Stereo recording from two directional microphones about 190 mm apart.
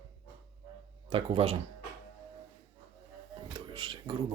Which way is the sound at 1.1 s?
30° right (ahead or behind).